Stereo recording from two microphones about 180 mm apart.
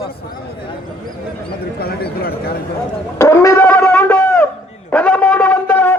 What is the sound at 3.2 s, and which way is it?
Music, 15° left (ahead or behind).